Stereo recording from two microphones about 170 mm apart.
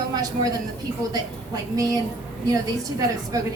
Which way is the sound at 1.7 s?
20° right (ahead or behind).